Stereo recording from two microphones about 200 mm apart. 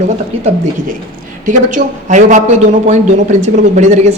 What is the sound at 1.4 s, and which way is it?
A woman's voice, 40° right (ahead or behind).